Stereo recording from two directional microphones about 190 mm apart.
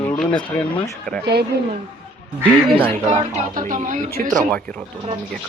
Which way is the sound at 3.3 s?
45° right (ahead or behind).